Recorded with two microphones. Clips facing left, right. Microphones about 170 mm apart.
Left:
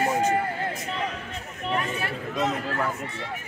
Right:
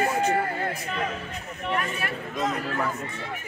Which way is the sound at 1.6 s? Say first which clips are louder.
Left 1 dB; 25° left (ahead or behind).